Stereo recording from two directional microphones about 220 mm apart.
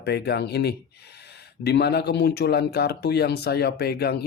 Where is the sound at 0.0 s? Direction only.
50° left (ahead or behind).